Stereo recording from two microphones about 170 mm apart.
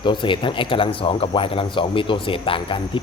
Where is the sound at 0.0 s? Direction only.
30° left (ahead or behind).